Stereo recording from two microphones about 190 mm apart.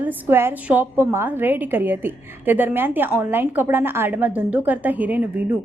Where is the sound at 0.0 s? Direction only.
10° right (ahead or behind).